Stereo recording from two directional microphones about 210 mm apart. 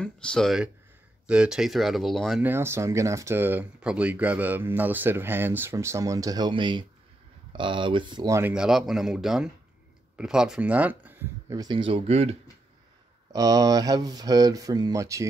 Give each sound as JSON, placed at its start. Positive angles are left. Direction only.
{"t": 0.0, "sound": "speech", "side_deg": 5}
{"t": 2.5, "sound": "speech", "side_deg": -10}
{"t": 13.3, "sound": "speech", "side_deg": -20}